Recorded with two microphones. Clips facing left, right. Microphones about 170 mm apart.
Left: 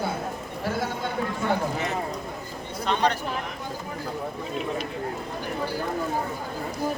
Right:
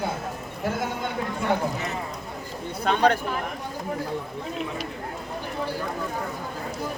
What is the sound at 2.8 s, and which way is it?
Speech, 55° right (ahead or behind).